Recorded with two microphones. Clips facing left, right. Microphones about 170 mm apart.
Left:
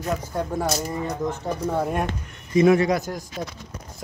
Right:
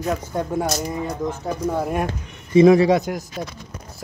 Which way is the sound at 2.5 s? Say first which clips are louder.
Right 5 dB; 30° right (ahead or behind).